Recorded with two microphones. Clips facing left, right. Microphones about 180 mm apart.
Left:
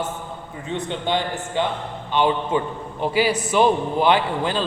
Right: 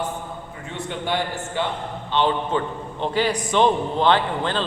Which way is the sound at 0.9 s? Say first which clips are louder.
Even; 20° left (ahead or behind).